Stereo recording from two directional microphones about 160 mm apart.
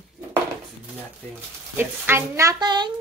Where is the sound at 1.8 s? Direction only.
15° right (ahead or behind).